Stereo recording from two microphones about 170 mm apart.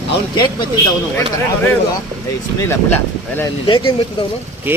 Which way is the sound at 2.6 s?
15° left (ahead or behind).